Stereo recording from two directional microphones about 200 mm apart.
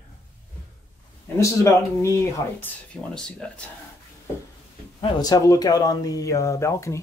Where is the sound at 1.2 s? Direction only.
15° left (ahead or behind).